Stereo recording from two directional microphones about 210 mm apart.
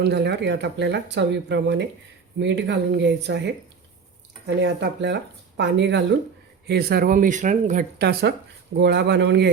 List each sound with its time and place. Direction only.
0.0 s speech: 55° right (ahead or behind)